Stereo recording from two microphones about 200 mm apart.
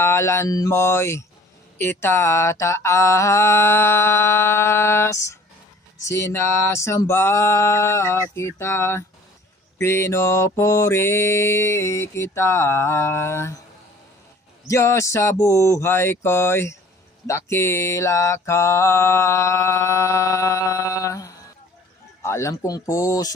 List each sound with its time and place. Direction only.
0.0 s mantra: 15° left (ahead or behind)
14.7 s mantra: 15° left (ahead or behind)
22.2 s speech: 15° left (ahead or behind)
22.9 s mantra: 15° left (ahead or behind)